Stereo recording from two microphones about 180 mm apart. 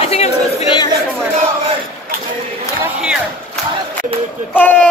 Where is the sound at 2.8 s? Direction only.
5° right (ahead or behind).